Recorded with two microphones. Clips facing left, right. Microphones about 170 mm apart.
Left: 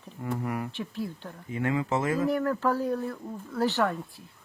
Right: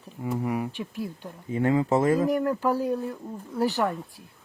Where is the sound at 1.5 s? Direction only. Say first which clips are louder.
Right 5 dB; 35° right (ahead or behind).